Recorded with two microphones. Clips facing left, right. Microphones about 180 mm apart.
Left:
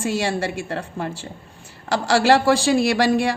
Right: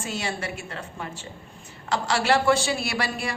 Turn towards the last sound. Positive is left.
turn(degrees=90)